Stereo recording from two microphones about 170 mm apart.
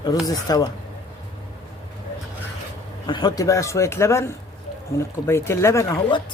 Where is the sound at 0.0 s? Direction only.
20° left (ahead or behind).